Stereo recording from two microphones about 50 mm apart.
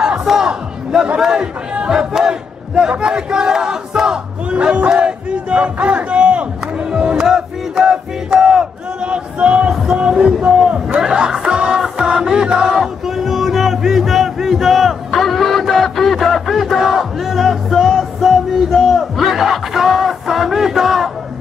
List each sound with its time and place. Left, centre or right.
0.0 s battle cry: centre
1.2 s speech: centre
1.9 s battle cry: centre
4.5 s battle cry: right
9.9 s music: centre
10.7 s a sound: centre
11.4 s music: centre
12.0 s chant: centre